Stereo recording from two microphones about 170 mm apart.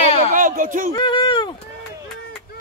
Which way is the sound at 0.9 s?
25° left (ahead or behind).